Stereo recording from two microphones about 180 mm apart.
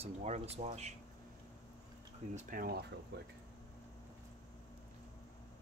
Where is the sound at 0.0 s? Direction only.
35° right (ahead or behind).